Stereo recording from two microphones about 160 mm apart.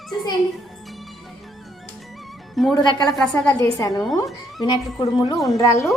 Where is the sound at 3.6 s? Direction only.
20° left (ahead or behind).